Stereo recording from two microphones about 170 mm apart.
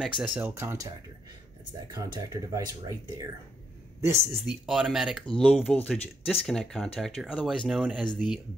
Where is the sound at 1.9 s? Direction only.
20° right (ahead or behind).